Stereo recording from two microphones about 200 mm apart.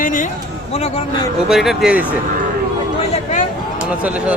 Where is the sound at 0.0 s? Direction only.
40° left (ahead or behind).